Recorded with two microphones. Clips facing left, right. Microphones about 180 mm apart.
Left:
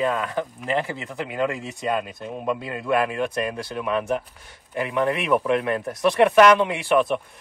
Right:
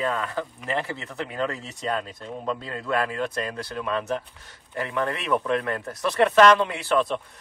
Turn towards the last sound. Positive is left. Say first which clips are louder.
# left 3 dB
turn(degrees=15)  # may be behind; listen again after turning